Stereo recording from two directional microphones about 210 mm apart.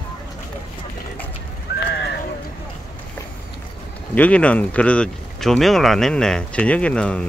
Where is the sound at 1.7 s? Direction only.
45° left (ahead or behind).